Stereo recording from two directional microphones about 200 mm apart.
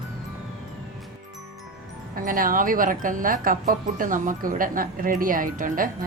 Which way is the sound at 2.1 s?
45° right (ahead or behind).